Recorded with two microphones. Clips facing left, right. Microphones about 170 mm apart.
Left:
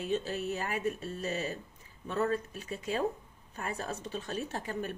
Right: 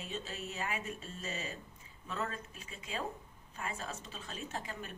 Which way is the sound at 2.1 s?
40° left (ahead or behind).